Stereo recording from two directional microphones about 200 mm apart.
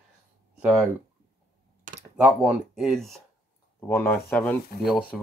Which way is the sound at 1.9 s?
40° right (ahead or behind).